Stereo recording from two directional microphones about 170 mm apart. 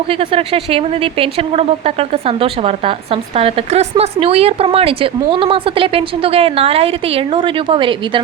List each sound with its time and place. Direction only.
0.1 s speech: 35° right (ahead or behind)